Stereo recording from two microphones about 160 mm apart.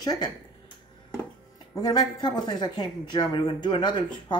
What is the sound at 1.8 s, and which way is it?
Speech, 25° left (ahead or behind).